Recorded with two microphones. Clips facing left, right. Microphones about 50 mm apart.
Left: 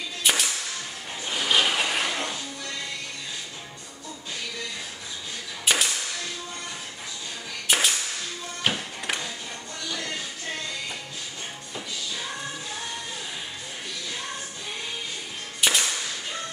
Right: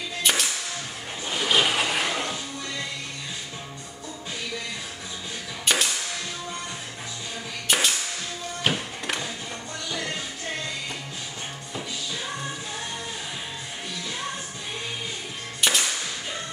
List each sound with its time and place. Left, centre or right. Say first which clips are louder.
0.2 s music: even; centre
1.3 s vehicle: right 1 dB; centre
5.7 s music: even; centre
7.6 s music: even; centre
9.8 s music: right 2 dB; centre
15.6 s music: even; centre